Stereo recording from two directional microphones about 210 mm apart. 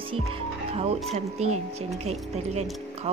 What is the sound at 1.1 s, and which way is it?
Speech, 30° right (ahead or behind).